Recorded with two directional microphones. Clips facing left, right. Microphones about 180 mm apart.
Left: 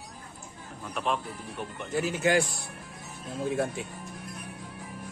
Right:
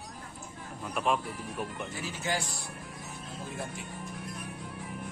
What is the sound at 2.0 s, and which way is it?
Speech, 60° left (ahead or behind).